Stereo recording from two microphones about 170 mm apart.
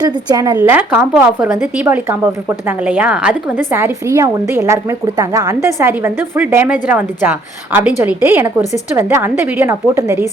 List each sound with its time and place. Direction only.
0.3 s speech: 25° right (ahead or behind)
0.6 s a woman's voice: 10° right (ahead or behind)